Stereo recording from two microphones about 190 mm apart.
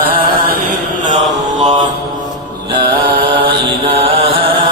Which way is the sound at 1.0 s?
40° right (ahead or behind).